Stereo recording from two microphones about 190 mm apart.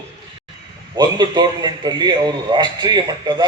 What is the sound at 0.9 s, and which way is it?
A man's voice, 20° right (ahead or behind).